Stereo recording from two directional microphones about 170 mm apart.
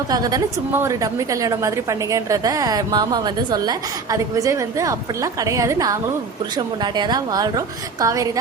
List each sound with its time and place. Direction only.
0.1 s a woman's voice: 20° right (ahead or behind)